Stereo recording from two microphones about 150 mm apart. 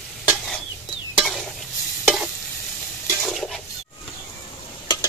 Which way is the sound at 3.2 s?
Centre (ahead or behind).